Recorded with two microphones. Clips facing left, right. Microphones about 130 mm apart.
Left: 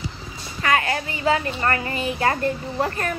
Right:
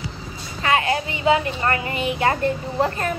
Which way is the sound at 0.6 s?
25° right (ahead or behind).